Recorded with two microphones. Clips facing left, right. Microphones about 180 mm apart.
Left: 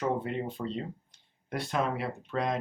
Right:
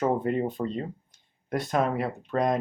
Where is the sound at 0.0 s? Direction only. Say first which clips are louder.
Right 6 dB; 45° right (ahead or behind).